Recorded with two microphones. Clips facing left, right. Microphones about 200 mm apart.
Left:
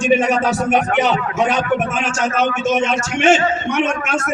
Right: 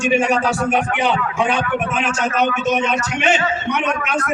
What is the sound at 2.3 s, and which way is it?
A man's voice, 45° left (ahead or behind).